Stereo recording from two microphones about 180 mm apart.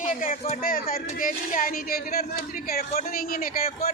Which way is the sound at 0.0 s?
50° left (ahead or behind).